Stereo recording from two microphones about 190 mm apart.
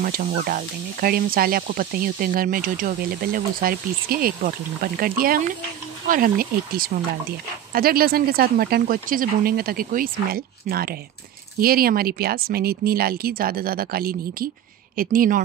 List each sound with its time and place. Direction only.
0.0 s speech: 50° right (ahead or behind)